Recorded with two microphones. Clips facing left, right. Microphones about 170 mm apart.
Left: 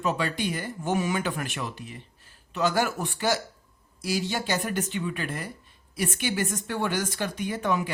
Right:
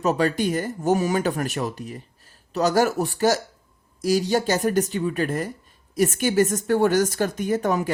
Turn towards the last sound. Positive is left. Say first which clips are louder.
# right 5 dB
turn(degrees=-45)  # may be behind; listen again after turning